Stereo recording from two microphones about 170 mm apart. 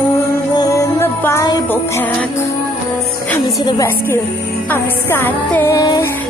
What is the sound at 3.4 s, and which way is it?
Music, 25° left (ahead or behind).